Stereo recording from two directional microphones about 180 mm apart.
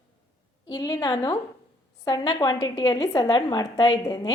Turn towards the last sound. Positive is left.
turn(degrees=20)  # may be behind; listen again after turning